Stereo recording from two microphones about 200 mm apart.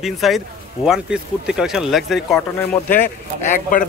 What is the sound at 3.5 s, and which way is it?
Speech, 40° left (ahead or behind).